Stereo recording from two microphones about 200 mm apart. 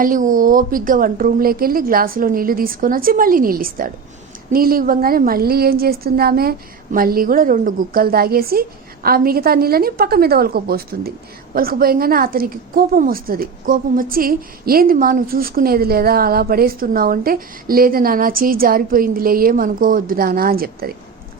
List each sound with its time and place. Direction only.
0.0 s a woman's voice: 40° right (ahead or behind)